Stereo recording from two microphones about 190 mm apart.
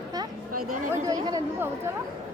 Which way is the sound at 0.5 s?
45° right (ahead or behind).